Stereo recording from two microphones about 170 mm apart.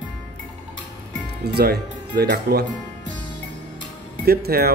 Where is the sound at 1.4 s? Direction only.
70° right (ahead or behind).